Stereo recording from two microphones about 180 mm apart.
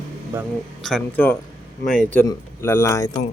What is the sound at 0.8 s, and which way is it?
A man's voice, 5° left (ahead or behind).